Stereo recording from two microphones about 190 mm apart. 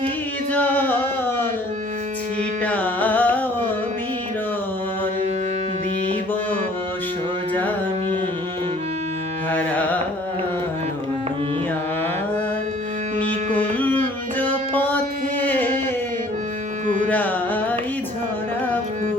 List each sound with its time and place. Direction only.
0.5 s music: 10° left (ahead or behind)
2.6 s carnatic music: 10° left (ahead or behind)
9.5 s carnatic music: 10° left (ahead or behind)
13.1 s music: 10° left (ahead or behind)
15.4 s a sound: 10° left (ahead or behind)
16.8 s music: 40° right (ahead or behind)
17.1 s carnatic music: 10° left (ahead or behind)